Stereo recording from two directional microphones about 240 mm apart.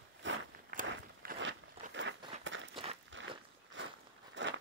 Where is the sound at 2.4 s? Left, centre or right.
Right.